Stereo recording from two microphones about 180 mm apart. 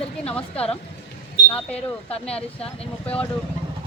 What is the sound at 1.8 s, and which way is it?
Speech, 35° left (ahead or behind).